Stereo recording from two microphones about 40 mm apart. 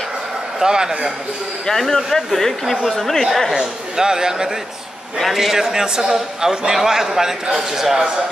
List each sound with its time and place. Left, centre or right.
0.6 s a man's voice: centre
1.8 s speech: centre
3.5 s a man's voice: centre
5.2 s a man's voice: centre